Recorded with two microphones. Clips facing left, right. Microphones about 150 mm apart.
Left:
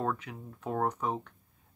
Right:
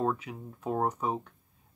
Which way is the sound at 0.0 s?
10° right (ahead or behind).